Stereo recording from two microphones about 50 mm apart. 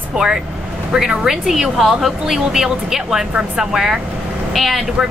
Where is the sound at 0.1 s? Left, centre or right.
Centre.